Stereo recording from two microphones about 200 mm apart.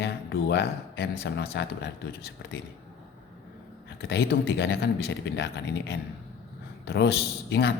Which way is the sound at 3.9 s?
55° left (ahead or behind).